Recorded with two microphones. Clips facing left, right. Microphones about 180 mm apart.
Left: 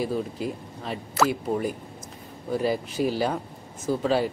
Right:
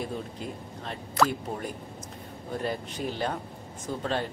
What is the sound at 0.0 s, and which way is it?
Speech, 5° left (ahead or behind).